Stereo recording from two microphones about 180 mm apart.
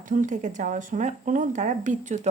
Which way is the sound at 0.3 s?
45° right (ahead or behind).